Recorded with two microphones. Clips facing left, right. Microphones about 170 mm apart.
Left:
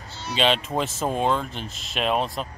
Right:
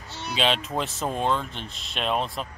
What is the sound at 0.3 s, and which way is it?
Speech, centre (ahead or behind).